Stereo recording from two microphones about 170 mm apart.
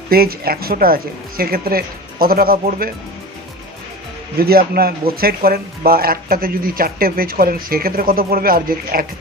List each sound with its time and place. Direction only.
0.1 s speech: 65° right (ahead or behind)
4.4 s speech: 65° right (ahead or behind)